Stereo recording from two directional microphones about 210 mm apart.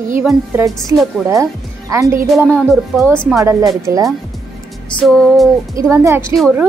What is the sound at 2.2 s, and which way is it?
Speech, centre (ahead or behind).